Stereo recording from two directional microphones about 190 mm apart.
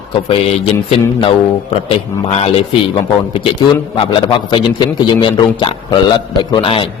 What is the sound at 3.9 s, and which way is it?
A man's voice, 25° left (ahead or behind).